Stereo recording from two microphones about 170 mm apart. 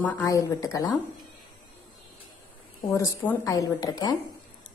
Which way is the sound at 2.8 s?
15° left (ahead or behind).